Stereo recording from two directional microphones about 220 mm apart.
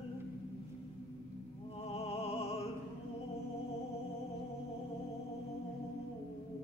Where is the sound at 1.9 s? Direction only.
30° left (ahead or behind).